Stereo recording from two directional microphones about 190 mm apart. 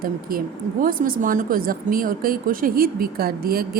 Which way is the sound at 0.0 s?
50° right (ahead or behind).